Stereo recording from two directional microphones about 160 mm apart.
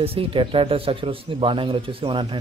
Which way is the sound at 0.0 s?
35° right (ahead or behind).